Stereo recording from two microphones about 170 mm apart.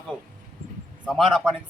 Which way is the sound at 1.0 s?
Centre (ahead or behind).